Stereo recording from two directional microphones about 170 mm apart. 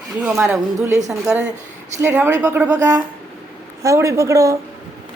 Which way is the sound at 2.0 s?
15° right (ahead or behind).